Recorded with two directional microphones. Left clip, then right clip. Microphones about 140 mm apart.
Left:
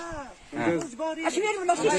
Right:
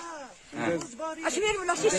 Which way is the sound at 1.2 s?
45° right (ahead or behind).